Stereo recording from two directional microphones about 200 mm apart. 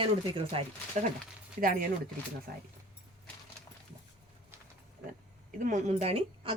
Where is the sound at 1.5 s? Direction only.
45° right (ahead or behind).